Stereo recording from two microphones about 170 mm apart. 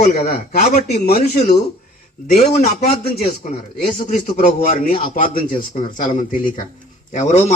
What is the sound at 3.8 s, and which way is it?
A man's voice, 55° left (ahead or behind).